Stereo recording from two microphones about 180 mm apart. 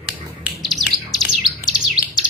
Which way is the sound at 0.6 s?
Centre (ahead or behind).